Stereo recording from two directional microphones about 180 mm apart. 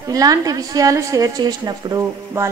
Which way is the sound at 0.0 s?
20° right (ahead or behind).